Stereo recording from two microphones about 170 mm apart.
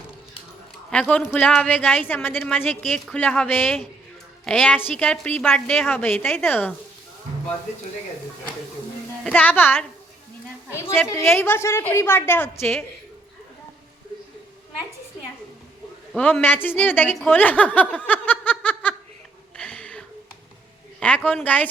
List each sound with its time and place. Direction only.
0.9 s a woman's voice: 5° left (ahead or behind)
9.2 s a woman's voice: 10° left (ahead or behind)
11.1 s a woman's voice: 15° left (ahead or behind)
16.1 s a woman's voice: 10° left (ahead or behind)
19.5 s a sound: 10° left (ahead or behind)
21.2 s a woman's voice: 10° left (ahead or behind)